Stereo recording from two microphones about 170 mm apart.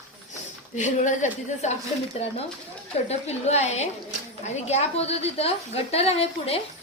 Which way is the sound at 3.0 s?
40° left (ahead or behind).